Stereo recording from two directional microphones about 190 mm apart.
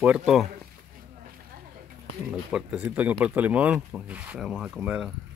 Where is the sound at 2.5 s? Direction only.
5° right (ahead or behind).